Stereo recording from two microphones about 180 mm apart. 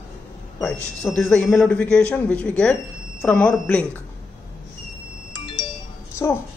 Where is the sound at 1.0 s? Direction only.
5° left (ahead or behind).